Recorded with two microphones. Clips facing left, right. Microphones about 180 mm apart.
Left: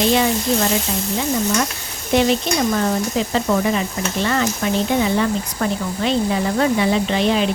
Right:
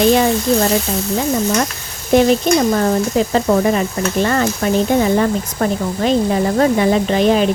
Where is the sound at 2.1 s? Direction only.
45° right (ahead or behind).